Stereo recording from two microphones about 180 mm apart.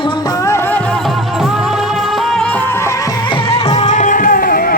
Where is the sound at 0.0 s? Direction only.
25° left (ahead or behind).